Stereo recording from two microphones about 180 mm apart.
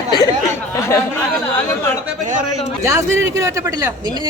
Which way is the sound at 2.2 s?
45° right (ahead or behind).